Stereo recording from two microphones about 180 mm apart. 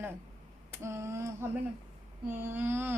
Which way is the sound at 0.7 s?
15° right (ahead or behind).